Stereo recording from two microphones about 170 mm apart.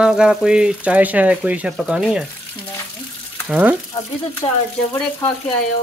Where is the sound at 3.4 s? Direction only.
5° right (ahead or behind).